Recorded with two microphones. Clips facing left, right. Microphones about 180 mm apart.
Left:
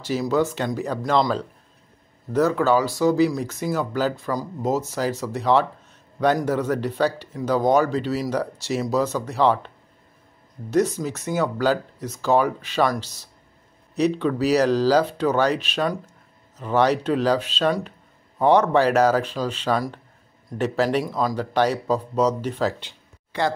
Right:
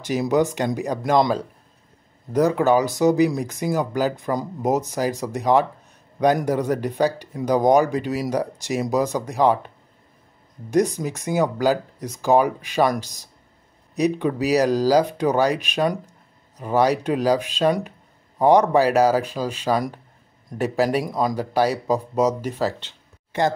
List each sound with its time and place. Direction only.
0.0 s speech: 15° right (ahead or behind)
10.7 s speech: 15° right (ahead or behind)